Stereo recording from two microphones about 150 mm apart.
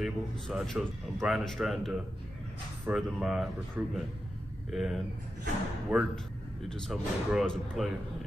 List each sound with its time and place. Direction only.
0.0 s speech: centre (ahead or behind)
4.7 s speech: centre (ahead or behind)